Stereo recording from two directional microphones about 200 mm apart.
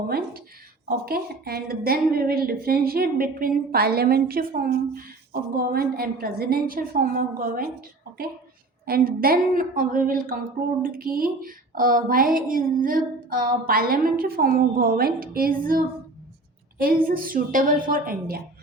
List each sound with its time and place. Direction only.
0.9 s a woman's voice: 50° right (ahead or behind)
16.8 s a woman's voice: 45° right (ahead or behind)